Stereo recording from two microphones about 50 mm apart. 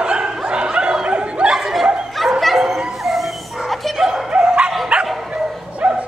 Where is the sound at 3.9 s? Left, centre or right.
Centre.